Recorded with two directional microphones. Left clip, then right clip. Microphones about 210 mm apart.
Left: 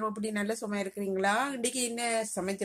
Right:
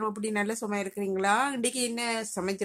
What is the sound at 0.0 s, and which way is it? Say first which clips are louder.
Speech: right 3 dB; 15° right (ahead or behind).